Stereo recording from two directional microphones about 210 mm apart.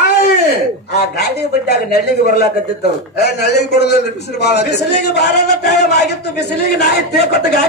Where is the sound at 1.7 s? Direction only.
50° left (ahead or behind).